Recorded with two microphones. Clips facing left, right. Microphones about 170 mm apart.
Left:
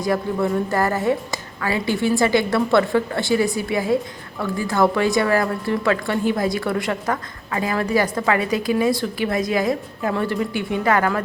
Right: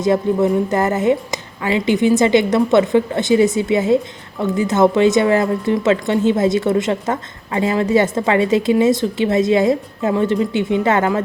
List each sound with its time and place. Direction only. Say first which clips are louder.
0.0 s a woman's voice: right 6 dB; 20° right (ahead or behind)